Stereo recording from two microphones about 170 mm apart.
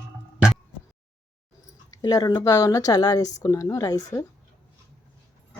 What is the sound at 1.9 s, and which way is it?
Speech, 20° left (ahead or behind).